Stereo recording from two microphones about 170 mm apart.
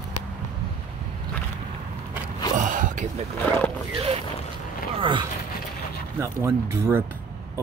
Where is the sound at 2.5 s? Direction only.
50° right (ahead or behind).